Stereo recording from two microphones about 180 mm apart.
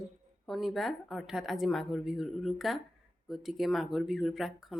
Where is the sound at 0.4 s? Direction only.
Centre (ahead or behind).